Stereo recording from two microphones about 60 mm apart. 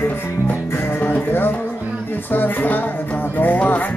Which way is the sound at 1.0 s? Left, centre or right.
Left.